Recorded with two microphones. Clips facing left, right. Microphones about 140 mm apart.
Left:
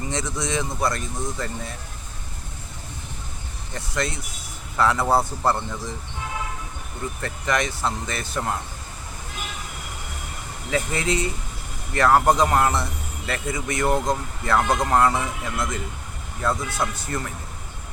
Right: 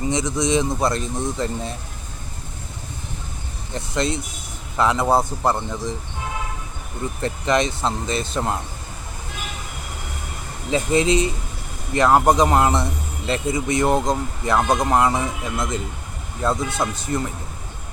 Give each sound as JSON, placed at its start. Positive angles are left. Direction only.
{"t": 0.1, "sound": "a man's voice", "side_deg": -15}
{"t": 3.8, "sound": "a man's voice", "side_deg": -20}
{"t": 7.2, "sound": "a man's voice", "side_deg": -20}
{"t": 10.7, "sound": "a man's voice", "side_deg": -20}